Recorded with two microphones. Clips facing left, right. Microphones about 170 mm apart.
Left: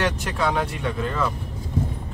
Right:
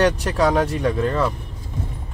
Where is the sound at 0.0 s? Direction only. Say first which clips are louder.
Right 6 dB; 40° right (ahead or behind).